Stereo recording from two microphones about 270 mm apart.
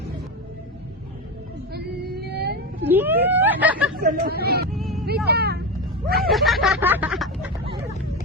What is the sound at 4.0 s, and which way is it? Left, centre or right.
Speech, right.